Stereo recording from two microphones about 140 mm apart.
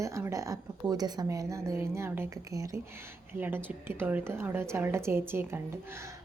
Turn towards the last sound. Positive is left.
turn(degrees=-20)  # may be behind; listen again after turning